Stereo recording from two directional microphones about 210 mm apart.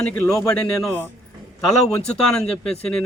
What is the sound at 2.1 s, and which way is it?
Speech, 5° left (ahead or behind).